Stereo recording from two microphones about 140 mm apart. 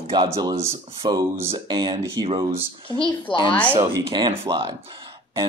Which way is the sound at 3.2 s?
35° left (ahead or behind).